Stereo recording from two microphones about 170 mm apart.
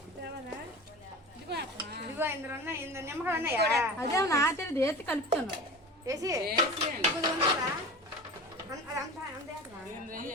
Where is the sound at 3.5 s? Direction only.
75° right (ahead or behind).